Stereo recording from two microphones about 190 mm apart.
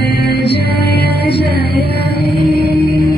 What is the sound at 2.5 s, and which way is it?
Music, 55° right (ahead or behind).